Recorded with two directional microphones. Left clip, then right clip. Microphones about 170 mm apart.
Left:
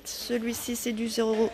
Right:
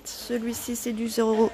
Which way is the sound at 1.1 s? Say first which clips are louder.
Right 4 dB; 20° right (ahead or behind).